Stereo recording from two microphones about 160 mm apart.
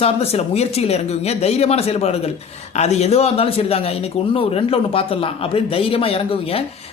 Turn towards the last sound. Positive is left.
turn(degrees=35)  # may be behind; listen again after turning